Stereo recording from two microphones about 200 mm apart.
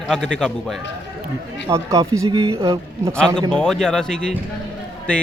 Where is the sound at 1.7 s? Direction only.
15° right (ahead or behind).